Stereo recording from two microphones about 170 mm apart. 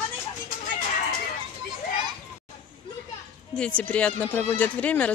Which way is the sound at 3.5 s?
5° left (ahead or behind).